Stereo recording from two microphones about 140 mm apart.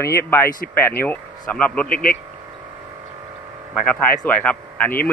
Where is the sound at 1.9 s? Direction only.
80° left.